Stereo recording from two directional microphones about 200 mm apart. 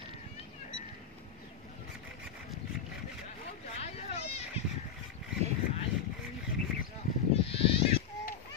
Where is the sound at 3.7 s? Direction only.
30° left (ahead or behind).